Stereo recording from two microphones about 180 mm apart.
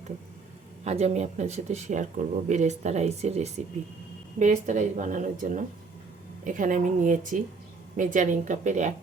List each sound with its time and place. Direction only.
0.9 s speech: 40° right (ahead or behind)